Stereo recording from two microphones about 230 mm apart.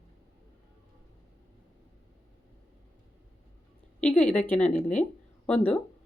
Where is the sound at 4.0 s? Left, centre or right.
Centre.